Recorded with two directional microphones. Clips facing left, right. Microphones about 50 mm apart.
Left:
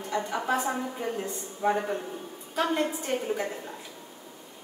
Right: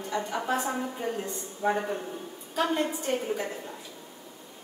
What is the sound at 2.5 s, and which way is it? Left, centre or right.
Speech, centre.